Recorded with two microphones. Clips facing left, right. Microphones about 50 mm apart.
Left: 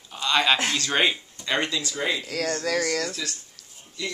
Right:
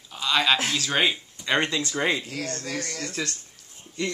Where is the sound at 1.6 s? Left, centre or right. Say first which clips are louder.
Right 2 dB; right.